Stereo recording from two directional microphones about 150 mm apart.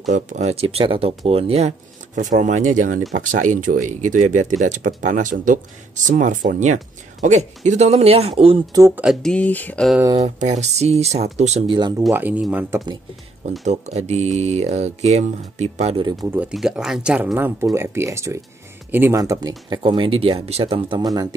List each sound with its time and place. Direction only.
0.1 s speech: 50° right (ahead or behind)
2.1 s speech: 55° right (ahead or behind); by 8.6 s 40° right (ahead or behind)
8.7 s speech: 20° right (ahead or behind)
9.0 s speech: centre (ahead or behind)
10.2 s speech: 50° right (ahead or behind)
11.6 s speech: 30° right (ahead or behind)
12.1 s speech: 10° right (ahead or behind)
13.7 s speech: 50° right (ahead or behind)
16.3 s speech: 10° right (ahead or behind); by 21.0 s 40° right (ahead or behind)
21.0 s speech: 25° right (ahead or behind)